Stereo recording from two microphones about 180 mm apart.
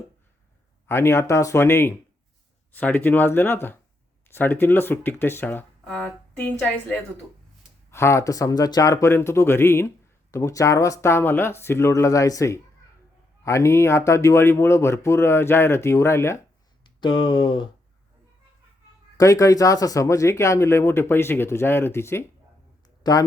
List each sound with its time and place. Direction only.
0.9 s speech: 15° left (ahead or behind)
17.0 s speech: 25° left (ahead or behind)
19.1 s speech: 20° left (ahead or behind)